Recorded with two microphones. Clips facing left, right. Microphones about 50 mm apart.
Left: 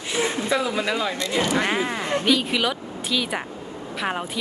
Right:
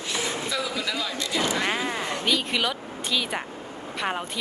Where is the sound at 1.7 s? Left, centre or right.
Centre.